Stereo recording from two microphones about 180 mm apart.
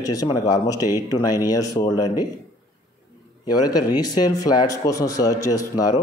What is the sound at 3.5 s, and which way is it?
Speech, 20° left (ahead or behind).